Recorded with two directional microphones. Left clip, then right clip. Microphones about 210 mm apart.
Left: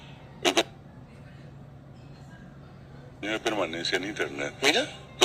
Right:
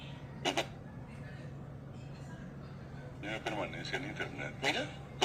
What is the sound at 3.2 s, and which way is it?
A man's voice, 50° left (ahead or behind).